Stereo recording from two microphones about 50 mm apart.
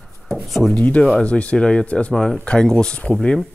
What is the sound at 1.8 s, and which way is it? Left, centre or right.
Speech, left.